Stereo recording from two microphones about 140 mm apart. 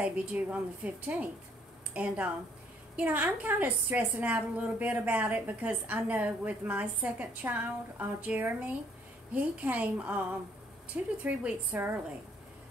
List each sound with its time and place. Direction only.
0.0 s a woman's voice: 10° right (ahead or behind)